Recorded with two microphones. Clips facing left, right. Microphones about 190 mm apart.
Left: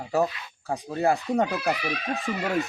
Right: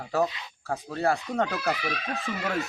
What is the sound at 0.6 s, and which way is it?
Speech, 15° left (ahead or behind).